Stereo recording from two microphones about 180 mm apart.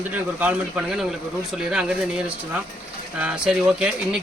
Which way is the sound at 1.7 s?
5° right (ahead or behind).